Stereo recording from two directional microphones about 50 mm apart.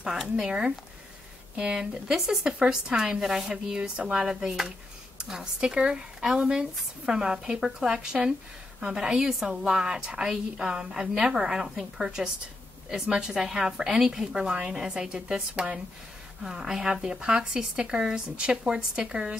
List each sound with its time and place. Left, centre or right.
0.0 s speech: centre